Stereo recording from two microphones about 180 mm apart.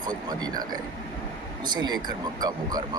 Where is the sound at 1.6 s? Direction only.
25° right (ahead or behind).